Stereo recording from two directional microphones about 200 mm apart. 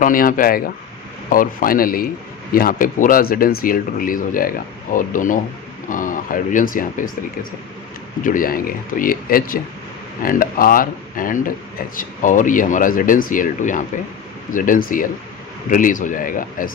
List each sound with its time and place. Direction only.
0.0 s speech: 45° left (ahead or behind)
8.2 s speech: 45° left (ahead or behind)